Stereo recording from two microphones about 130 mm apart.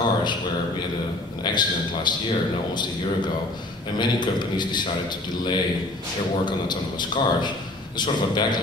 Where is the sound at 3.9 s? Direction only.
35° left (ahead or behind).